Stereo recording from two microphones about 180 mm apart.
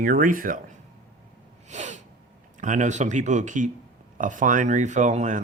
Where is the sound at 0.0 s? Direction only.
50° right (ahead or behind).